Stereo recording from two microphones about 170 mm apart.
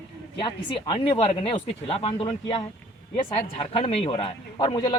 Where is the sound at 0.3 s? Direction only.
30° left (ahead or behind).